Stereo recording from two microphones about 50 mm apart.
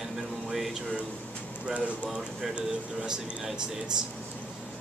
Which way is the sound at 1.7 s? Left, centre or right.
Right.